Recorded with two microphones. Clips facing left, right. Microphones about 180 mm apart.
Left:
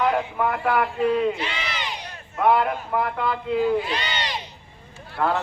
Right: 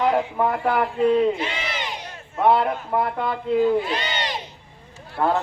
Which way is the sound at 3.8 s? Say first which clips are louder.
Right 2 dB; 50° right (ahead or behind).